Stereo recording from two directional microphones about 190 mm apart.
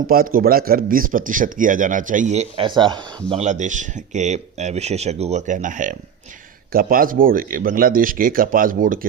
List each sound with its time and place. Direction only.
0.1 s speech: 50° right (ahead or behind); by 3.0 s 25° right (ahead or behind)
3.2 s speech: 35° right (ahead or behind)